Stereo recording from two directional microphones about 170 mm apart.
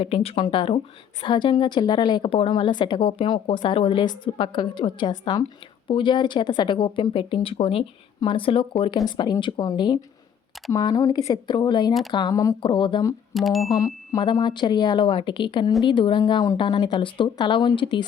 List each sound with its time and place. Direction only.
0.0 s a woman's voice: 35° left (ahead or behind)
13.3 s speech: centre (ahead or behind)
13.7 s a woman's voice: 20° left (ahead or behind)